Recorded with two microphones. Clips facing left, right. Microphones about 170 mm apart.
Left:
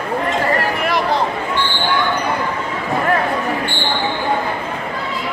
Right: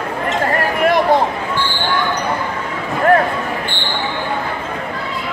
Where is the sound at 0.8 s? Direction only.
50° right (ahead or behind).